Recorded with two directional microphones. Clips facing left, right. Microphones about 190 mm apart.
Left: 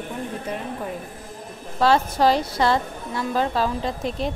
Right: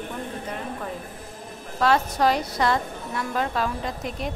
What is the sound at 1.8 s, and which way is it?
A woman's voice, 30° left (ahead or behind).